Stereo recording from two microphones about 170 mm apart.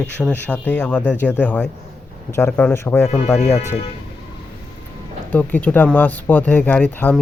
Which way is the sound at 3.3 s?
40° left (ahead or behind).